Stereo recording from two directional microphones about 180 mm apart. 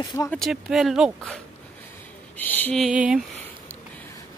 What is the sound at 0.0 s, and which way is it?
Speech, 20° left (ahead or behind).